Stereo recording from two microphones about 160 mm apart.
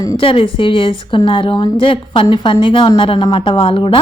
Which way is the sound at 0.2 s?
35° left (ahead or behind).